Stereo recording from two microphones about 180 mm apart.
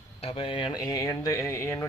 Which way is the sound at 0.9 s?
20° left (ahead or behind).